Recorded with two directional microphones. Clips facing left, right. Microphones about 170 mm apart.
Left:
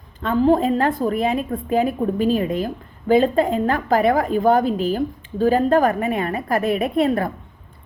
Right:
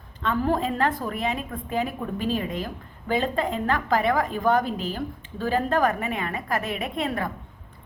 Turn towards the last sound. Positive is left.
turn(degrees=35)  # may be behind; listen again after turning